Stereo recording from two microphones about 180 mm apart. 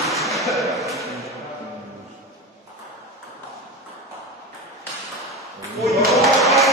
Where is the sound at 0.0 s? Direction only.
Centre (ahead or behind).